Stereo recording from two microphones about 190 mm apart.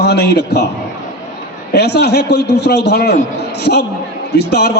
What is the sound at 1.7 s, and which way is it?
A man's voice, 60° left (ahead or behind).